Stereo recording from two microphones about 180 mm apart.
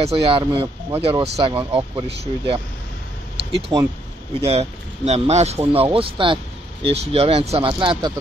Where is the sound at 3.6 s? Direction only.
25° right (ahead or behind).